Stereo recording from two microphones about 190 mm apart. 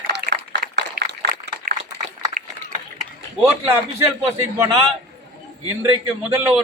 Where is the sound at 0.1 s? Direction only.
50° right (ahead or behind).